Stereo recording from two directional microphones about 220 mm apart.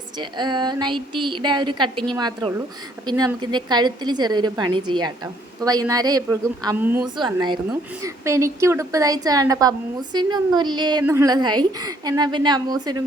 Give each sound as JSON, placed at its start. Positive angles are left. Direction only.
{"t": 0.2, "sound": "a woman's voice", "side_deg": -20}
{"t": 7.2, "sound": "a woman's voice", "side_deg": -20}